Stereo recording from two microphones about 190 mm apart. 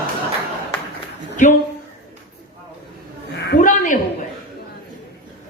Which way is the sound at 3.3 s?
65° left (ahead or behind).